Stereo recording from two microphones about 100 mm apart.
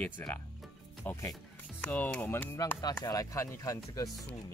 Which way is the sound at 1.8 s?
10° left (ahead or behind).